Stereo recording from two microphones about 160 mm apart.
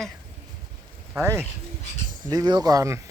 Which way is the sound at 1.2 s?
15° right (ahead or behind).